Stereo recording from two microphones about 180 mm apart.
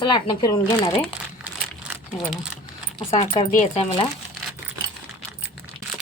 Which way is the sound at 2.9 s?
30° left (ahead or behind).